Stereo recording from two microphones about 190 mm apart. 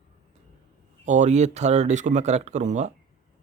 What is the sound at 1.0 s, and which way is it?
Speech, 40° right (ahead or behind).